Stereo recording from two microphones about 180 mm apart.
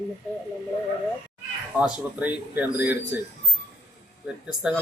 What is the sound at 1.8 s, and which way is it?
Speech, 10° right (ahead or behind).